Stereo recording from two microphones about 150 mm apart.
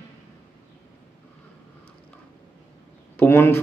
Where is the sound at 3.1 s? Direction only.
15° left (ahead or behind).